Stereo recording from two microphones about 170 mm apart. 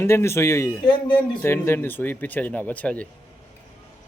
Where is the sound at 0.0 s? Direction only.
15° left (ahead or behind).